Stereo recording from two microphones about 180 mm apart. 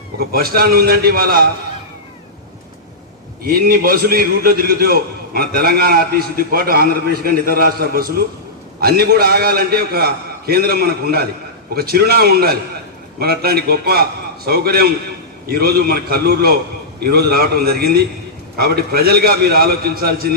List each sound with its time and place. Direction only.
0.2 s a man's voice: 55° right (ahead or behind)
3.4 s a man's voice: 55° right (ahead or behind)